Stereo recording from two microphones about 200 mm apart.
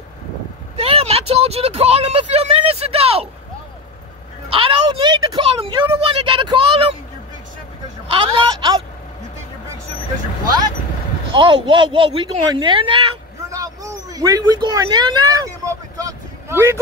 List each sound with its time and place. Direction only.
0.7 s speech: 30° right (ahead or behind)
4.5 s a woman's voice: 25° right (ahead or behind)
8.1 s a woman's voice: 25° right (ahead or behind)
11.3 s speech: 25° right (ahead or behind)